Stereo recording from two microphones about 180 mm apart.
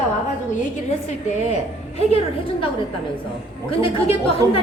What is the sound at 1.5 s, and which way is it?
Speech, 35° left (ahead or behind).